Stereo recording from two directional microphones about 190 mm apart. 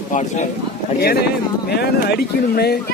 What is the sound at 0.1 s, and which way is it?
Speech, 40° left (ahead or behind).